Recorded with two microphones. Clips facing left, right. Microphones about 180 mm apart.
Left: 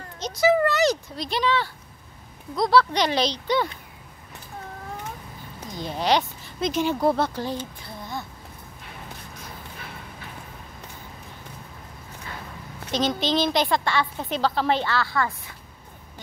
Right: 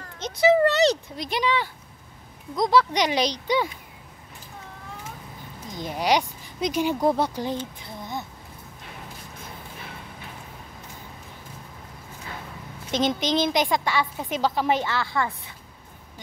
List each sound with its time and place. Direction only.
0.4 s a sound: 30° right (ahead or behind)
1.1 s a woman's voice: 15° right (ahead or behind)
5.8 s speech: 15° right (ahead or behind)
12.9 s a woman's voice: 20° right (ahead or behind)